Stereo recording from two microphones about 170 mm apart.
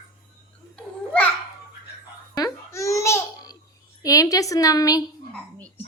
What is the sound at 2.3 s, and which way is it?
Babbling, 20° left (ahead or behind).